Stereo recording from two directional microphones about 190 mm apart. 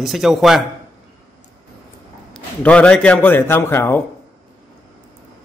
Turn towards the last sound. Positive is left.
turn(degrees=10)  # may be behind; listen again after turning